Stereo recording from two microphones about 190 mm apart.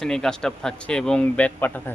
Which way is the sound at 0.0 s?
5° left (ahead or behind).